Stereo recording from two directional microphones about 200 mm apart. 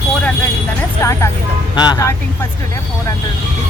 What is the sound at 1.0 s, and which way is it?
Speech, 15° left (ahead or behind).